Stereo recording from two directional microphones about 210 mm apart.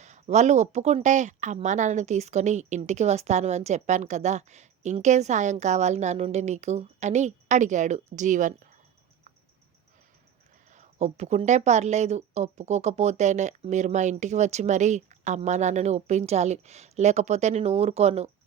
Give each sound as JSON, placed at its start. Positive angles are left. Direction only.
{"t": 0.0, "sound": "speech", "side_deg": -35}
{"t": 10.7, "sound": "speech", "side_deg": -35}